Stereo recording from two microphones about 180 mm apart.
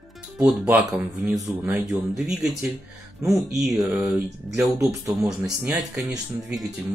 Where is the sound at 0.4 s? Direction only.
5° right (ahead or behind).